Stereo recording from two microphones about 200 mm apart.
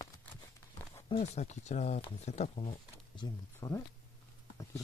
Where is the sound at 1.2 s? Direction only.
35° left (ahead or behind); by 3.8 s 20° left (ahead or behind).